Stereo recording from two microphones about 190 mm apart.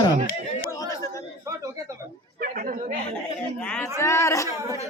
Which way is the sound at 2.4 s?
50° right (ahead or behind).